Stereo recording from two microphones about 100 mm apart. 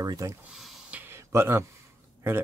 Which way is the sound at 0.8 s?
15° right (ahead or behind).